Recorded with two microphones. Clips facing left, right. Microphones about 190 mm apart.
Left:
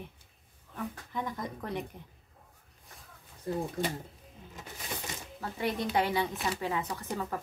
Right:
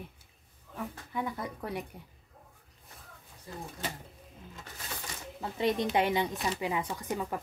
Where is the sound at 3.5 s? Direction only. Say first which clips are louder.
Left 11 dB; 60° left (ahead or behind).